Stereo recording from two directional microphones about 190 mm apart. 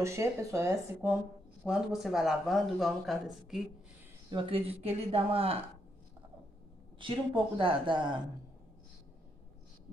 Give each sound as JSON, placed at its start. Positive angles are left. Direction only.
{"t": 0.0, "sound": "speech", "side_deg": -15}
{"t": 1.6, "sound": "a man's voice", "side_deg": 0}
{"t": 4.3, "sound": "speech", "side_deg": -25}
{"t": 7.0, "sound": "speech", "side_deg": -25}